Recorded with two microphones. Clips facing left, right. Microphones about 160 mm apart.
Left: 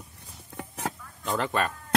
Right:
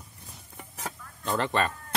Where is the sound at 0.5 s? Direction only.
75° left (ahead or behind).